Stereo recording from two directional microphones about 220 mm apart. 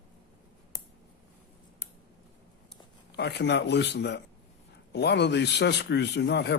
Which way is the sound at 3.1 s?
50° left (ahead or behind).